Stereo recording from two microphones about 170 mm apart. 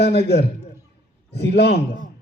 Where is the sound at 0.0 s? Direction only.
75° left (ahead or behind).